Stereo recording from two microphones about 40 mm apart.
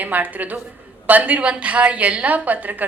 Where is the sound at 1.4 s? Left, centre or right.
Right.